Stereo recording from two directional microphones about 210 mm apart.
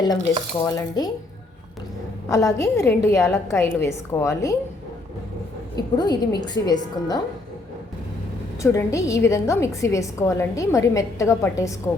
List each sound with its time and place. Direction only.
0.6 s a woman's voice: 20° left (ahead or behind)
2.3 s a woman's voice: 15° left (ahead or behind)
5.7 s a woman's voice: 20° left (ahead or behind)
8.6 s a woman's voice: 15° left (ahead or behind)